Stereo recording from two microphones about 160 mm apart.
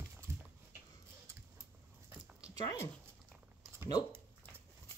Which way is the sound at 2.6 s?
20° left (ahead or behind).